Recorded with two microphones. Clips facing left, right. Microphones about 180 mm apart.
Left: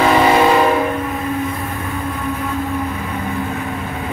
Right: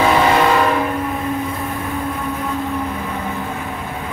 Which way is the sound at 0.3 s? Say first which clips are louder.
Left 2 dB; 15° left (ahead or behind).